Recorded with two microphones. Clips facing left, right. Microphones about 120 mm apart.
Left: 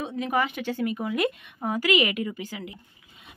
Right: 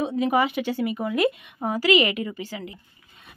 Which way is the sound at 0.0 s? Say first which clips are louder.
Right 5 dB; 10° right (ahead or behind).